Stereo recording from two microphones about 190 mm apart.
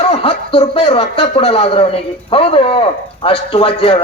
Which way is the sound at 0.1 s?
30° left (ahead or behind).